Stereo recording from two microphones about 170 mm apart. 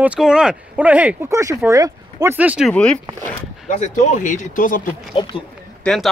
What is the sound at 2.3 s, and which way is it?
Speech, 10° right (ahead or behind).